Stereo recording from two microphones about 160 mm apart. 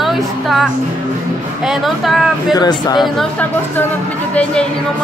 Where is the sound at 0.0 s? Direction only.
Centre (ahead or behind).